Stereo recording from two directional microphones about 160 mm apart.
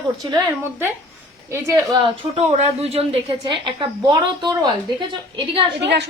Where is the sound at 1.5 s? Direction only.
15° right (ahead or behind).